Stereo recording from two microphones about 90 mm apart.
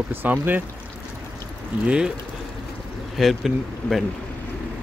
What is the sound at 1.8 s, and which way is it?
Speech, 10° right (ahead or behind).